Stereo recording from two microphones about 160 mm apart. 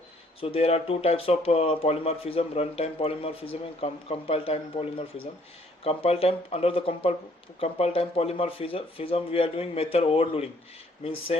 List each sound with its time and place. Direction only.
0.3 s speech: 35° left (ahead or behind)